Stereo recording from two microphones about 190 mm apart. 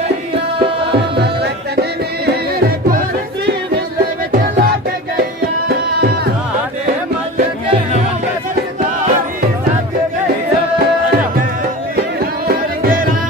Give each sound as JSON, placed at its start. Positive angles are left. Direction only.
{"t": 1.1, "sound": "music", "side_deg": -60}
{"t": 4.3, "sound": "music", "side_deg": -55}
{"t": 12.4, "sound": "music", "side_deg": -50}